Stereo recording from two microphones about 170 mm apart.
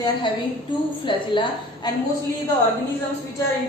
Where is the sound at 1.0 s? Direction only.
30° left (ahead or behind).